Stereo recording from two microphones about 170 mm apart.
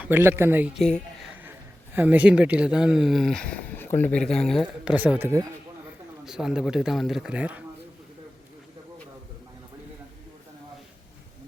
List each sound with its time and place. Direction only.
0.0 s speech: 10° right (ahead or behind)
0.8 s speech: 5° left (ahead or behind)
1.3 s speech: 10° right (ahead or behind)
4.9 s speech: 10° right (ahead or behind)
6.2 s speech: 5° right (ahead or behind)